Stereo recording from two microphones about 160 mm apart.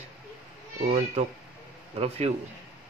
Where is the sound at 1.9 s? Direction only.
40° right (ahead or behind).